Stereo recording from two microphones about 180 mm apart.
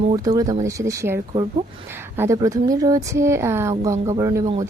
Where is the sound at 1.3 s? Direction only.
30° right (ahead or behind).